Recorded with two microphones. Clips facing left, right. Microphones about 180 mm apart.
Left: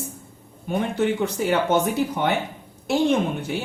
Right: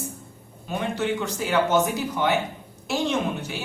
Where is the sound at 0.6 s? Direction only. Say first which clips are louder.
Left 4 dB; 55° left (ahead or behind).